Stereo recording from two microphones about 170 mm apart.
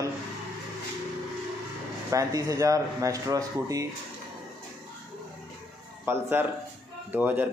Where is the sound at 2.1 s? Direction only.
20° right (ahead or behind).